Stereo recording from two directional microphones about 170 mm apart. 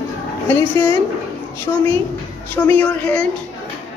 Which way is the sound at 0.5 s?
15° left (ahead or behind).